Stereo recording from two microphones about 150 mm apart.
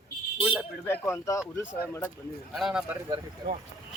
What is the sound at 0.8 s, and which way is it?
A man's voice, 15° left (ahead or behind).